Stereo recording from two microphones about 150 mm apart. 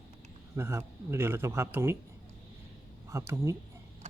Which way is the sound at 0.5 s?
20° right (ahead or behind).